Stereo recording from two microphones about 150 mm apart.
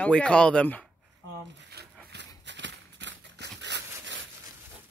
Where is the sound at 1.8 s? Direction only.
90° right.